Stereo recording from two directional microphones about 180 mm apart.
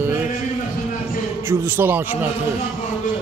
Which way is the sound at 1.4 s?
15° right (ahead or behind).